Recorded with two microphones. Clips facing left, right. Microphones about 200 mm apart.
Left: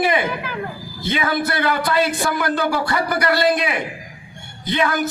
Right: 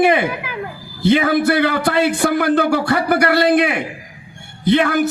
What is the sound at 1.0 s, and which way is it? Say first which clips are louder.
A man's voice: right 8 dB; 65° right (ahead or behind).